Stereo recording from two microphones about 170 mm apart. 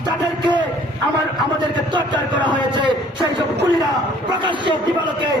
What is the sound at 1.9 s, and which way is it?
A man's voice, 25° right (ahead or behind).